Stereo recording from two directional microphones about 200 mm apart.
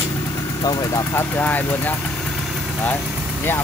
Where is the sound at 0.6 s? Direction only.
15° left (ahead or behind).